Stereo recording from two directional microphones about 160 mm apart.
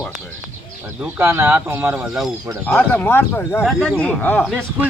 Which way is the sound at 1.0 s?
15° right (ahead or behind).